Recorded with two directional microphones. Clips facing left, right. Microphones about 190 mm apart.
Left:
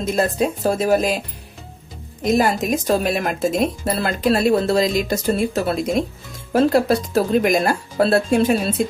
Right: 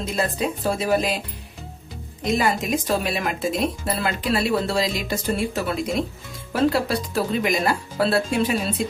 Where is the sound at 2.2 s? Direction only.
45° left (ahead or behind).